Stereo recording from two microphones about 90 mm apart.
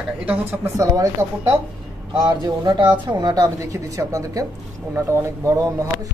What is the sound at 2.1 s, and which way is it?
Speech, 50° right (ahead or behind).